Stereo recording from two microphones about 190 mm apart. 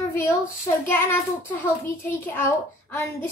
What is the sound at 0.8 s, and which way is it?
A child's voice, 10° left (ahead or behind).